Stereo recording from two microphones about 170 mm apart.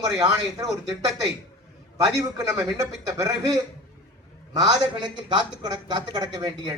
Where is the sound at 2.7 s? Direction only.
20° right (ahead or behind).